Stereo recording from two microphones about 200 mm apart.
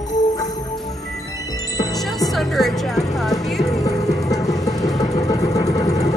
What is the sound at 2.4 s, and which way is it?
Music, centre (ahead or behind).